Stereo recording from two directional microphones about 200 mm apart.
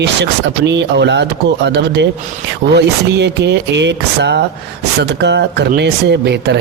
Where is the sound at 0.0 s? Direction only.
60° right (ahead or behind).